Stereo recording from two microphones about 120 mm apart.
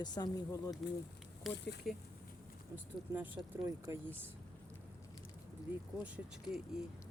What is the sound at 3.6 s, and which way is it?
Speech, 30° right (ahead or behind).